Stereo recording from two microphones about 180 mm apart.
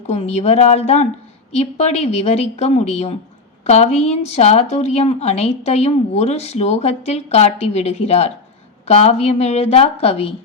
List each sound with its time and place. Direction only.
0.1 s a woman's voice: 35° left (ahead or behind)